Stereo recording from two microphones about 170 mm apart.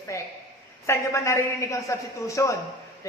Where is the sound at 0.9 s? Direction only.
15° left (ahead or behind).